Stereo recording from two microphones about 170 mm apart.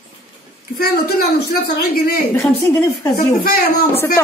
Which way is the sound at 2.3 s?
20° left (ahead or behind).